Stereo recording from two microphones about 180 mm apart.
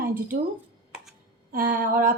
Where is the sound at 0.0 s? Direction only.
50° right (ahead or behind).